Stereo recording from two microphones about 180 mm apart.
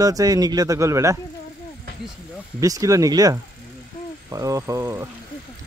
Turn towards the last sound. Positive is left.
turn(degrees=-15)  # may be behind; listen again after turning